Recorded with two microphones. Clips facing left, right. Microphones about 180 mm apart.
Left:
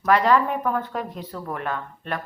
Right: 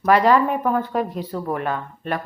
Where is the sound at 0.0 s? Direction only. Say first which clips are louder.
Right 3 dB; 10° right (ahead or behind).